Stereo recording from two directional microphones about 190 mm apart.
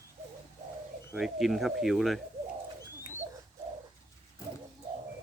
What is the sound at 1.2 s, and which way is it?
Speech, centre (ahead or behind).